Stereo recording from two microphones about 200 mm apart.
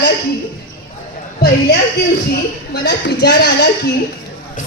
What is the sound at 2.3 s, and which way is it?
Speech, 55° left (ahead or behind).